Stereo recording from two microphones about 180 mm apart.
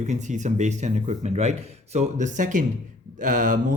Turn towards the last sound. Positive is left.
turn(degrees=-45)  # may be behind; listen again after turning